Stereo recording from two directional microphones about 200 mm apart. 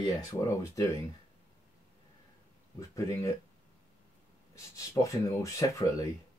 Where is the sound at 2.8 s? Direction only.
15° left (ahead or behind).